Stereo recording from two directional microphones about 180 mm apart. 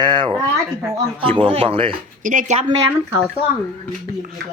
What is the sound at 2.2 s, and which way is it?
Speech, 45° right (ahead or behind).